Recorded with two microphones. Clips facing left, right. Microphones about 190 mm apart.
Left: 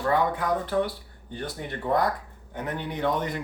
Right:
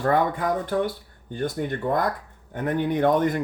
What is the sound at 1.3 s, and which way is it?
Speech, 45° right (ahead or behind).